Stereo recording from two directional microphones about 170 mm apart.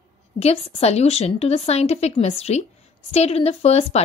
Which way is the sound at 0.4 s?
40° left (ahead or behind).